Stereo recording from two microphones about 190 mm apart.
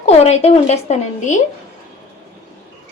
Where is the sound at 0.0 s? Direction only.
35° left (ahead or behind).